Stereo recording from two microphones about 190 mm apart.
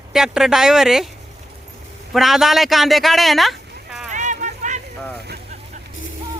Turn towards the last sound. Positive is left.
turn(degrees=-40)  # may be behind; listen again after turning